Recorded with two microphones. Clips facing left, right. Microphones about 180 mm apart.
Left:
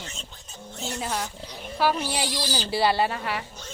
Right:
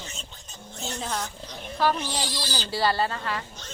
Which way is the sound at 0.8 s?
5° left (ahead or behind).